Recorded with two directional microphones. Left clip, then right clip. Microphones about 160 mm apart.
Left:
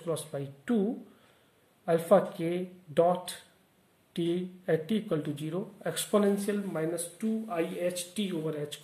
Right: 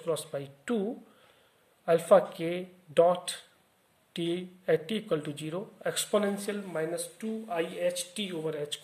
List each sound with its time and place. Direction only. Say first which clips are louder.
0.0 s speech: right 2 dB; 25° right (ahead or behind)
1.9 s speech: right 2 dB; 25° right (ahead or behind)